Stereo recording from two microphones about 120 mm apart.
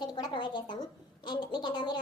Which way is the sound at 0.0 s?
35° left (ahead or behind).